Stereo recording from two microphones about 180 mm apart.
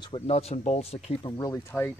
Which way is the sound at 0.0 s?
30° left (ahead or behind).